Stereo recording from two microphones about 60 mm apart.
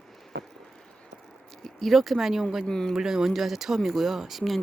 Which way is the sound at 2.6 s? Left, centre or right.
Centre.